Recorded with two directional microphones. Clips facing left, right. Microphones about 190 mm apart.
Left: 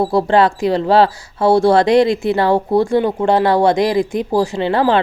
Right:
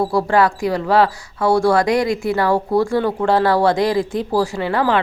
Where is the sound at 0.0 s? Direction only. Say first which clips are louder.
Left 3 dB; 25° left (ahead or behind).